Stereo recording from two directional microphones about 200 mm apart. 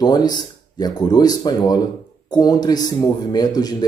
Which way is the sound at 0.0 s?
20° left (ahead or behind).